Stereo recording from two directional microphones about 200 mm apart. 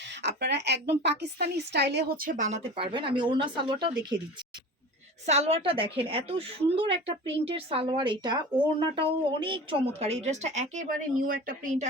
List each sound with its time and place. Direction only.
0.2 s a woman's voice: 60° right (ahead or behind); by 3.8 s 20° right (ahead or behind)
5.2 s a woman's voice: 30° right (ahead or behind)